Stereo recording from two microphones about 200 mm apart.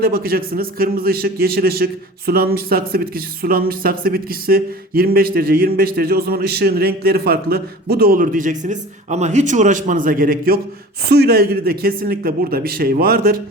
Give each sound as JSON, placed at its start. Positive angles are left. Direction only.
{"t": 0.0, "sound": "a man's voice", "side_deg": -50}